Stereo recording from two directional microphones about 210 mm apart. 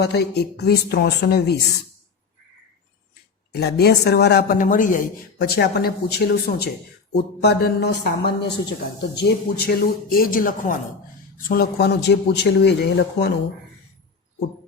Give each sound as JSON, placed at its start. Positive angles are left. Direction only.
{"t": 0.0, "sound": "speech", "side_deg": 50}
{"t": 3.5, "sound": "speech", "side_deg": 50}